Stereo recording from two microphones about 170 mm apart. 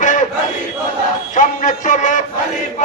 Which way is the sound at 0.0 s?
45° left (ahead or behind).